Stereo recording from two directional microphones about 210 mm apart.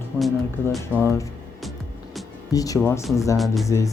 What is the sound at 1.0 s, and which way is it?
Speech, 15° left (ahead or behind).